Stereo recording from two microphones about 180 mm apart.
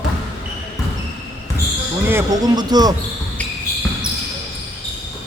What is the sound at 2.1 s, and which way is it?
Speech, 15° right (ahead or behind).